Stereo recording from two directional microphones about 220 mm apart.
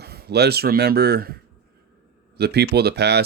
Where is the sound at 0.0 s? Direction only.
45° right (ahead or behind).